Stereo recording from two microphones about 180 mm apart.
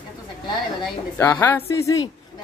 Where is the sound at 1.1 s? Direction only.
10° left (ahead or behind).